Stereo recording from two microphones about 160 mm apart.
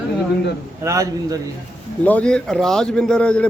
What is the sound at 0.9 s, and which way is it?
Speech, 20° right (ahead or behind).